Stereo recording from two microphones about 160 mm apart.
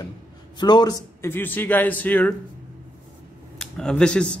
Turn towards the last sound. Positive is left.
turn(degrees=5)  # may be behind; listen again after turning